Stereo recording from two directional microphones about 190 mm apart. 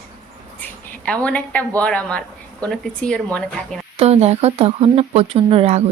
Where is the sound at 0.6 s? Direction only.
5° left (ahead or behind).